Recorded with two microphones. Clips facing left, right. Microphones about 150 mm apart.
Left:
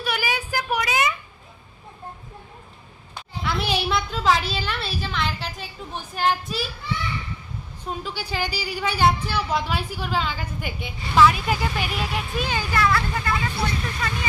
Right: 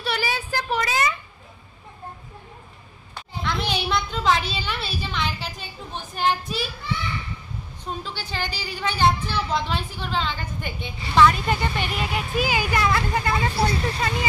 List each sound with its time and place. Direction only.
0.0 s a sound: 10° left (ahead or behind)
3.4 s a woman's voice: 5° left (ahead or behind)
7.8 s a woman's voice: 10° left (ahead or behind); by 12.6 s 5° right (ahead or behind)
12.7 s speech: 20° right (ahead or behind)